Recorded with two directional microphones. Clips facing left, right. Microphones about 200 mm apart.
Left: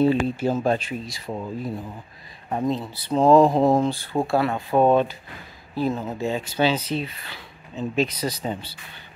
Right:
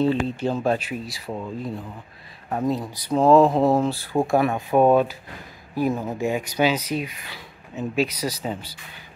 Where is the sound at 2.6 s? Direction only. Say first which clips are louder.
Right 1 dB; 10° right (ahead or behind).